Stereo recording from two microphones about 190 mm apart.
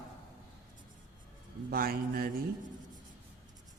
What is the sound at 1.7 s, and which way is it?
Speech, 50° right (ahead or behind).